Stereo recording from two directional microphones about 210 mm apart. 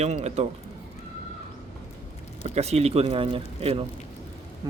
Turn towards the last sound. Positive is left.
turn(degrees=-25)  # may be behind; listen again after turning